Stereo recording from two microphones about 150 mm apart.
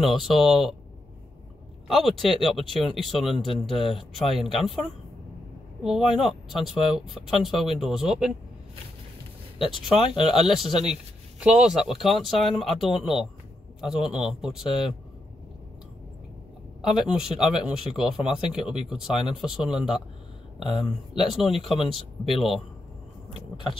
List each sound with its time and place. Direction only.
0.0 s speech: centre (ahead or behind)
1.9 s speech: centre (ahead or behind)
3.3 s speech: 35° left (ahead or behind)
3.9 s speech: centre (ahead or behind)
5.8 s speech: 5° right (ahead or behind)
9.6 s a man's voice: centre (ahead or behind)
16.8 s speech: 5° right (ahead or behind)
21.2 s speech: centre (ahead or behind)
21.7 s speech: 35° left (ahead or behind)
22.2 s speech: centre (ahead or behind)